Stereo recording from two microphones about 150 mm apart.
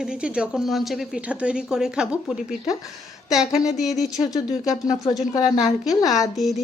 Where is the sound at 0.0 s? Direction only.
5° right (ahead or behind).